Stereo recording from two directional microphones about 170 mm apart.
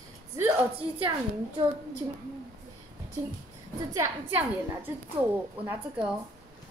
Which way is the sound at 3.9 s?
10° right (ahead or behind).